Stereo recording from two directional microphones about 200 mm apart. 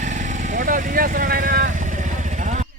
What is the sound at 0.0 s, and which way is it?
Vehicle, 40° right (ahead or behind).